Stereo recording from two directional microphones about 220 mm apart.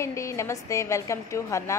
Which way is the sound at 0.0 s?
15° left (ahead or behind).